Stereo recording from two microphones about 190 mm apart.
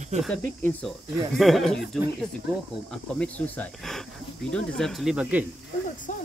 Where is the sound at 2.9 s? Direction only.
5° left (ahead or behind).